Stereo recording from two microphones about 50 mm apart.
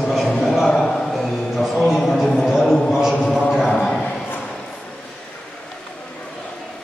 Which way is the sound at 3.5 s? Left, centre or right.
Centre.